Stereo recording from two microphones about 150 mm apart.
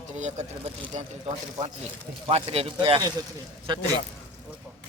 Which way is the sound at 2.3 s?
40° right (ahead or behind).